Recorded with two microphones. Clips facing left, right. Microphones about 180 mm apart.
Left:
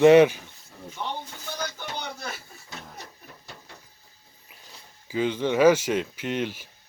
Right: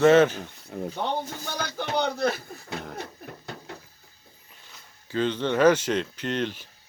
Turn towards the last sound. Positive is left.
turn(degrees=10)  # may be behind; listen again after turning